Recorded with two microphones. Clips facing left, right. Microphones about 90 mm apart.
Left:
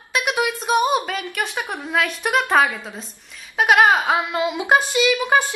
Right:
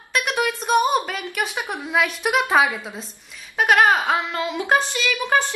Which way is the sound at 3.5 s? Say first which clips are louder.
Left 1 dB; 10° left (ahead or behind).